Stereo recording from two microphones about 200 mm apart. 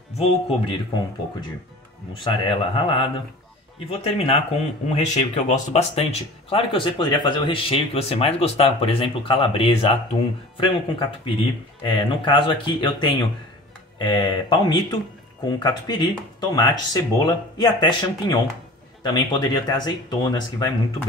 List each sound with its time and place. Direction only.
0.2 s speech: 25° left (ahead or behind)
2.1 s speech: 25° left (ahead or behind)